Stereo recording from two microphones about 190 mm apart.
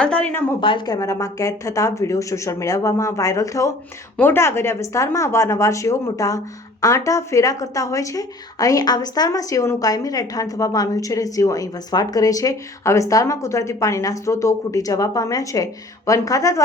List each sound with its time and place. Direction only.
0.0 s a woman's voice: 5° left (ahead or behind)
0.6 s speech: 25° left (ahead or behind)